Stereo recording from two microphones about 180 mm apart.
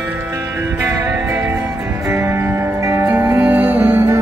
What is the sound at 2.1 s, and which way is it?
Music, 15° right (ahead or behind).